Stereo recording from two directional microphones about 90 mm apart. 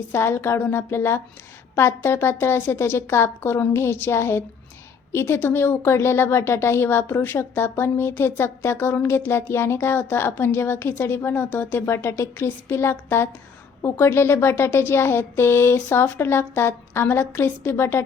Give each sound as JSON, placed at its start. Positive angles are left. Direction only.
{"t": 0.1, "sound": "speech", "side_deg": 30}